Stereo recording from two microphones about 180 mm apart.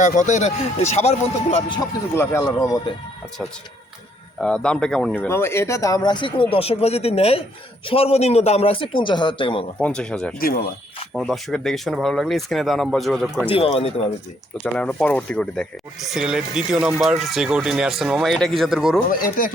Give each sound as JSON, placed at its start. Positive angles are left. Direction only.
{"t": 0.0, "sound": "a man's voice", "side_deg": 45}
{"t": 2.1, "sound": "speech", "side_deg": 15}
{"t": 4.4, "sound": "a man's voice", "side_deg": 5}
{"t": 9.7, "sound": "speech", "side_deg": 5}
{"t": 13.5, "sound": "a man's voice", "side_deg": 35}
{"t": 14.6, "sound": "speech", "side_deg": 5}